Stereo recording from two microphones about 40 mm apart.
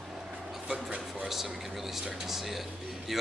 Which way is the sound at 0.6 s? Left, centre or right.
Right.